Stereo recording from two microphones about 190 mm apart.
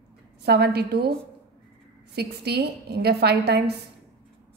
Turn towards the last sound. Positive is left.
turn(degrees=-60)  # may be behind; listen again after turning